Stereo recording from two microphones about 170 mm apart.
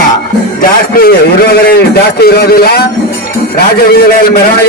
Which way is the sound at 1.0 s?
65° left (ahead or behind).